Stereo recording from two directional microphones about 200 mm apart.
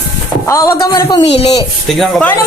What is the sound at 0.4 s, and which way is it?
Speech, 15° left (ahead or behind).